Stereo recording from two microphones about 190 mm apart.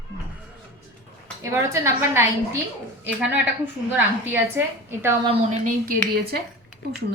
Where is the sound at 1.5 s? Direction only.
15° right (ahead or behind).